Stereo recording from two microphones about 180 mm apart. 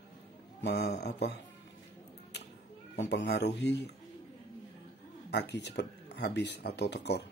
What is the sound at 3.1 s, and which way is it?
Speech, 70° left (ahead or behind).